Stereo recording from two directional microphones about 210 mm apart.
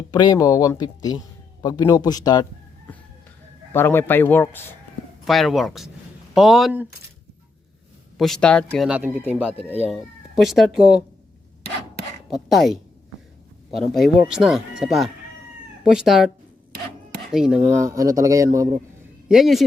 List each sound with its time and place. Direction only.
0.1 s speech: 20° left (ahead or behind); by 6.8 s centre (ahead or behind)
8.2 s speech: 5° left (ahead or behind)
12.3 s speech: centre (ahead or behind)
17.3 s speech: 5° right (ahead or behind)
17.8 s a man's voice: 15° right (ahead or behind)
19.3 s speech: centre (ahead or behind)